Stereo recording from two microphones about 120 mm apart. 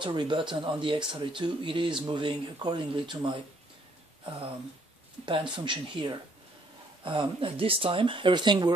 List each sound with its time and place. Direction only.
0.0 s speech: 40° right (ahead or behind)
5.2 s speech: 40° right (ahead or behind)